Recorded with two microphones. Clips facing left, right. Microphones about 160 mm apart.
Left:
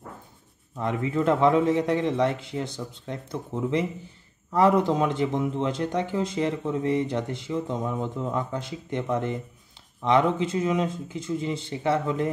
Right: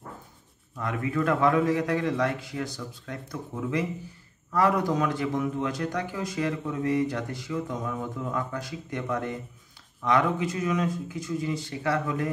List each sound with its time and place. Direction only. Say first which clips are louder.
0.7 s a man's voice: left 2 dB; 25° left (ahead or behind)